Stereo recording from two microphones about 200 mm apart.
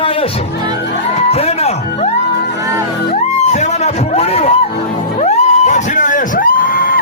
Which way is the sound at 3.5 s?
35° left (ahead or behind).